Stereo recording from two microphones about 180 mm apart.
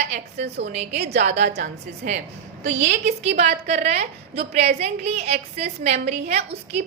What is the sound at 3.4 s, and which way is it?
A woman's voice, 40° right (ahead or behind).